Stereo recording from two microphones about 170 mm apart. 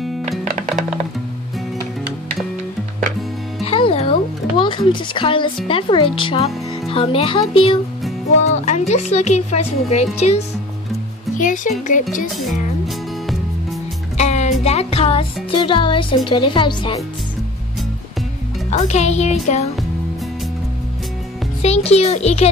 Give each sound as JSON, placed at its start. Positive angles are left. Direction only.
{"t": 3.6, "sound": "music", "side_deg": 35}
{"t": 5.7, "sound": "speech", "side_deg": 30}
{"t": 8.6, "sound": "speech", "side_deg": 40}
{"t": 12.8, "sound": "music", "side_deg": 0}
{"t": 14.1, "sound": "music", "side_deg": 40}
{"t": 14.6, "sound": "a woman's voice", "side_deg": 40}
{"t": 18.7, "sound": "speech", "side_deg": 40}
{"t": 21.6, "sound": "speech", "side_deg": 40}